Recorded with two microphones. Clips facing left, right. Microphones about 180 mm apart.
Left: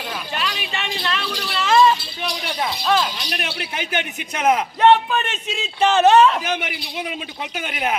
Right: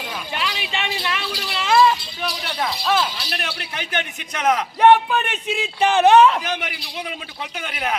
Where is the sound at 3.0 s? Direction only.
20° left (ahead or behind).